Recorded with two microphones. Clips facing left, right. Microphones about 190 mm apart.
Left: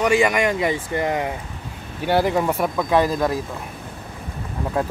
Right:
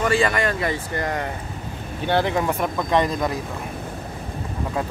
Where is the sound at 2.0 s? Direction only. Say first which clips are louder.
Left 2 dB; 10° left (ahead or behind).